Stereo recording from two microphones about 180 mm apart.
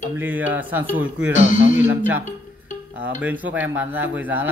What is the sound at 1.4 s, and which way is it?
Speech, 45° left (ahead or behind).